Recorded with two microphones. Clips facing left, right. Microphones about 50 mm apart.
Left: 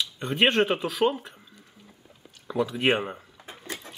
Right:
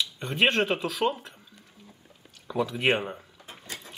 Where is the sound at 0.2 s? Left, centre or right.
Centre.